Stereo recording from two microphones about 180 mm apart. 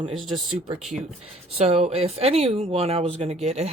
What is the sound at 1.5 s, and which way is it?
Speech, 35° right (ahead or behind).